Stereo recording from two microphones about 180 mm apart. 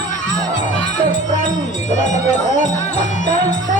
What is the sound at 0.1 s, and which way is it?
Music, 45° left (ahead or behind).